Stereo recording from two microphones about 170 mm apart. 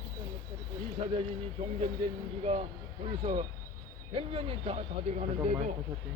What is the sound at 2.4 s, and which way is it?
Speech, 40° right (ahead or behind).